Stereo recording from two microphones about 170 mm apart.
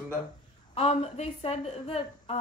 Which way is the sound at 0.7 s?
35° left (ahead or behind).